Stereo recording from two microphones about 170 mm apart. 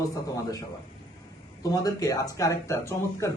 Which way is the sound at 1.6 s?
20° left (ahead or behind).